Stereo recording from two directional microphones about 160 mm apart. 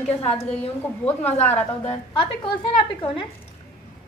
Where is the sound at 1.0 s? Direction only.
10° left (ahead or behind).